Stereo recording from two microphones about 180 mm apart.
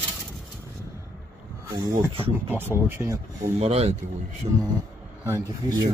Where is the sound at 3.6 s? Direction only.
35° right (ahead or behind).